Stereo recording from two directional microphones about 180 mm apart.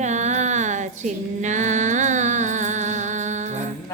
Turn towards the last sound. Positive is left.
turn(degrees=-40)  # may be behind; listen again after turning